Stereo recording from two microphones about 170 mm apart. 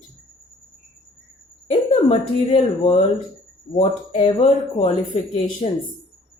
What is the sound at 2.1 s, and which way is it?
Speech, 40° left (ahead or behind).